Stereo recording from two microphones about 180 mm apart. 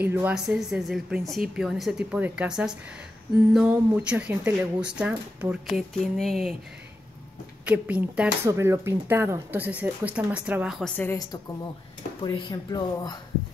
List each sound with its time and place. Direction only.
0.0 s speech: 10° right (ahead or behind)
7.6 s speech: 10° right (ahead or behind)
12.2 s speech: 25° left (ahead or behind)